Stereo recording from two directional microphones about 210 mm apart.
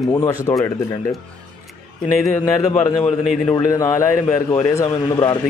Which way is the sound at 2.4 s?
15° left (ahead or behind).